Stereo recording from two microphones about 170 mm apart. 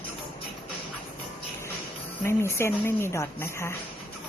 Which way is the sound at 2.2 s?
15° left (ahead or behind).